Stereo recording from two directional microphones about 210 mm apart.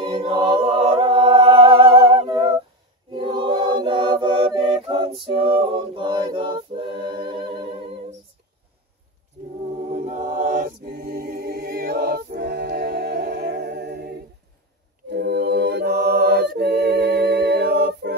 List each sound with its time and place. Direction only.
0.0 s a capella: 20° right (ahead or behind)
3.1 s choir: 20° right (ahead or behind)
5.8 s a capella: 25° right (ahead or behind)
9.4 s choir: 30° right (ahead or behind)
9.9 s a capella: 40° right (ahead or behind)
15.0 s choir: 55° right (ahead or behind)